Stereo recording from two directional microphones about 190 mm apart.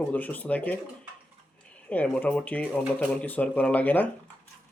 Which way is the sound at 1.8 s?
5° left (ahead or behind).